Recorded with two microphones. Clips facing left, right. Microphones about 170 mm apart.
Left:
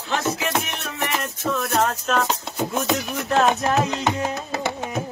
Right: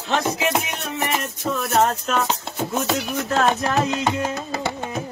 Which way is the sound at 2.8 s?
Centre (ahead or behind).